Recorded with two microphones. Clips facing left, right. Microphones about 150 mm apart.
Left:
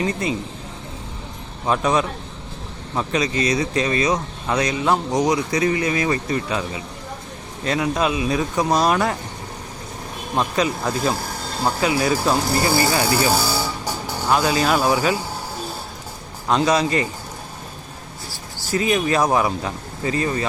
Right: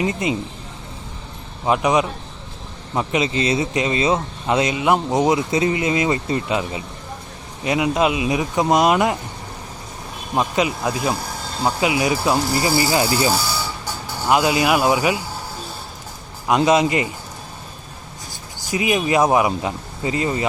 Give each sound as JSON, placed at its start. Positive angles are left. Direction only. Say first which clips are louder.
{"t": 0.0, "sound": "speech", "louder": "right 1 dB", "side_deg": -20}
{"t": 1.6, "sound": "speech", "louder": "right 2 dB", "side_deg": -15}
{"t": 10.3, "sound": "speech", "louder": "right 1 dB", "side_deg": -15}
{"t": 16.5, "sound": "speech", "louder": "right 2 dB", "side_deg": -15}
{"t": 18.3, "sound": "speech", "louder": "left 1 dB", "side_deg": -15}